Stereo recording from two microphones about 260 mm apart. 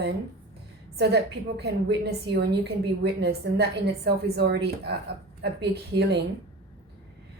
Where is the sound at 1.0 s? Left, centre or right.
Right.